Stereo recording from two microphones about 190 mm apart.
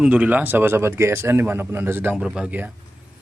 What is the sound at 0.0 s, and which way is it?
A man's voice, 5° right (ahead or behind).